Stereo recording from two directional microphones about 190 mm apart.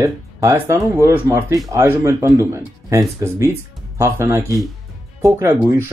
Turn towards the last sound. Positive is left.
turn(degrees=-15)  # may be behind; listen again after turning